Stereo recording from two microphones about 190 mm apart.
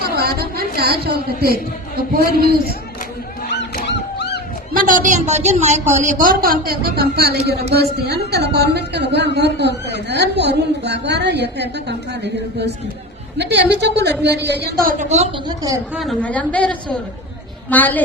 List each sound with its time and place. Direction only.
0.0 s a sound: 55° right (ahead or behind)
0.8 s a woman's voice: 55° right (ahead or behind)
3.5 s dog: 65° left (ahead or behind)
4.7 s a woman's voice: 45° right (ahead or behind)
15.4 s a woman's voice: 20° right (ahead or behind)
16.0 s a woman's voice: 5° left (ahead or behind)